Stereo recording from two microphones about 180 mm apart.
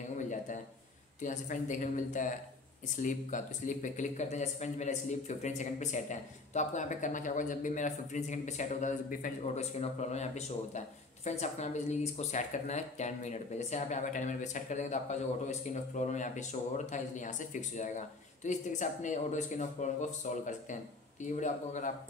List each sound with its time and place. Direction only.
1.2 s speech: 45° left (ahead or behind)